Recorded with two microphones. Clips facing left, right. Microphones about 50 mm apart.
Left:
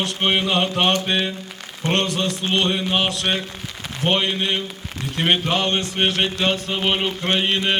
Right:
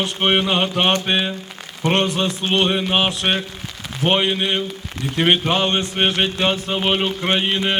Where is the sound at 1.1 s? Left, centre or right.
Centre.